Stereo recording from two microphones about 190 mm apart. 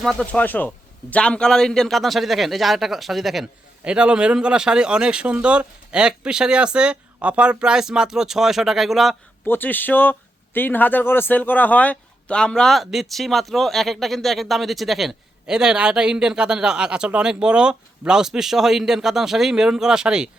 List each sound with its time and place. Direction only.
0.0 s a man's voice: centre (ahead or behind)
9.5 s a man's voice: 10° left (ahead or behind)